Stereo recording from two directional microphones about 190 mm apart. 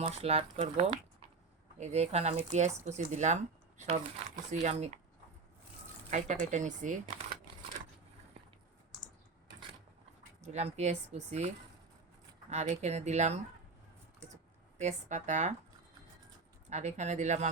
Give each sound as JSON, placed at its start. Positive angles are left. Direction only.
{"t": 0.0, "sound": "speech", "side_deg": -30}
{"t": 6.1, "sound": "speech", "side_deg": -40}
{"t": 10.4, "sound": "speech", "side_deg": -35}
{"t": 14.8, "sound": "speech", "side_deg": -40}
{"t": 16.6, "sound": "speech", "side_deg": -35}